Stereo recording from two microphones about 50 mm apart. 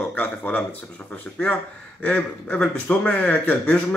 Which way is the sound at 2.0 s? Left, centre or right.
Left.